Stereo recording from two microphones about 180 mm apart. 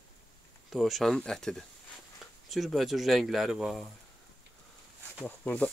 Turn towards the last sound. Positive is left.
turn(degrees=5)  # may be behind; listen again after turning